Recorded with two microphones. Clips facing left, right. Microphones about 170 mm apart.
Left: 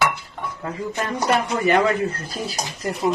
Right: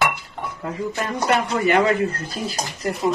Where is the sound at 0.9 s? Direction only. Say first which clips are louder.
Even; 15° left (ahead or behind).